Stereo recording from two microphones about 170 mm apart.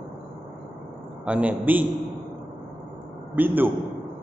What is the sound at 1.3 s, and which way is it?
Speech, 10° right (ahead or behind).